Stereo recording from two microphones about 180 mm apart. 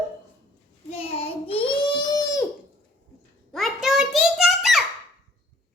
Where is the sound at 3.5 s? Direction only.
Centre (ahead or behind).